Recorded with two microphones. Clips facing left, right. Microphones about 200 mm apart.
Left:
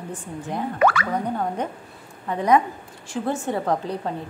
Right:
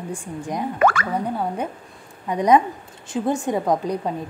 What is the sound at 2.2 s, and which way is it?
A woman's voice, 15° right (ahead or behind).